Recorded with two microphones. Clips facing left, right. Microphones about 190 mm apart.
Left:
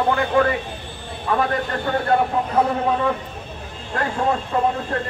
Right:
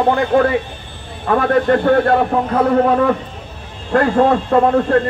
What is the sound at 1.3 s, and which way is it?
Speech, 55° right (ahead or behind).